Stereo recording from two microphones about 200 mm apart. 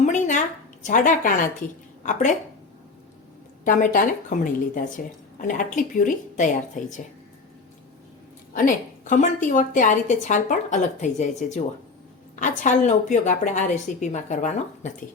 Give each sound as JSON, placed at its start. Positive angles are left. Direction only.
{"t": 0.0, "sound": "a sound", "side_deg": 40}
{"t": 2.0, "sound": "a woman's voice", "side_deg": 40}
{"t": 3.6, "sound": "a woman's voice", "side_deg": 40}
{"t": 8.5, "sound": "a woman's voice", "side_deg": 40}